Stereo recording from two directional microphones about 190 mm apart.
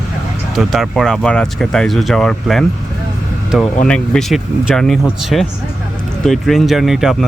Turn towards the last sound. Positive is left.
turn(degrees=0)  # may be behind; listen again after turning